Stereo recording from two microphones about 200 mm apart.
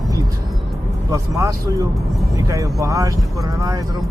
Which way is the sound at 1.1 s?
15° right (ahead or behind).